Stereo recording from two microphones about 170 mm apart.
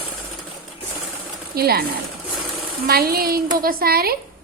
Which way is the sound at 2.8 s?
65° right (ahead or behind).